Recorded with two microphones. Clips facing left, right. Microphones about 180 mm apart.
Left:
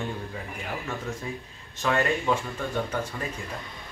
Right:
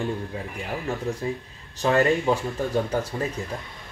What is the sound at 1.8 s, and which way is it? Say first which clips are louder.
Speech: right 5 dB; 35° right (ahead or behind).